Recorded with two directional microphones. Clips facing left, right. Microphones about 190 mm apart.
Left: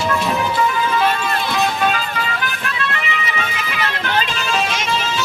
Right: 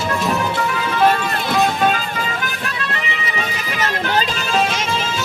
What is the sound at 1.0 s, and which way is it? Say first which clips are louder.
Music: right 2 dB; 45° right (ahead or behind).